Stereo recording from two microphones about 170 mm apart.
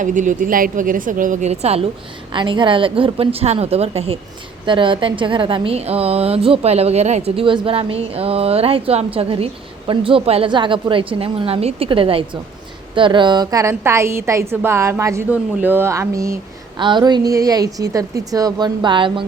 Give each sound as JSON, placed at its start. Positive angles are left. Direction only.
{"t": 0.0, "sound": "a woman's voice", "side_deg": -50}
{"t": 2.3, "sound": "a woman's voice", "side_deg": -30}